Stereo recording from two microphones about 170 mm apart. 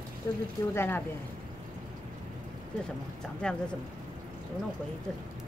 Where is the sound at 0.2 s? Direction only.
15° left (ahead or behind).